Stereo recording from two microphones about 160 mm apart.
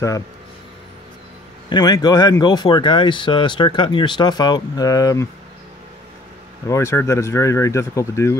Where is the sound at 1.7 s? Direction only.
25° left (ahead or behind).